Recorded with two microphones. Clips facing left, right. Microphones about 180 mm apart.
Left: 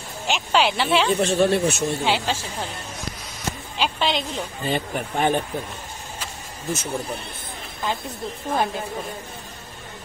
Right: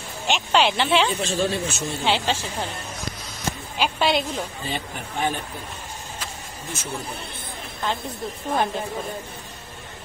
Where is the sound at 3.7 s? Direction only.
10° right (ahead or behind).